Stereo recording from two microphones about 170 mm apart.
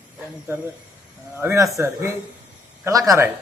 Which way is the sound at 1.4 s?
15° right (ahead or behind).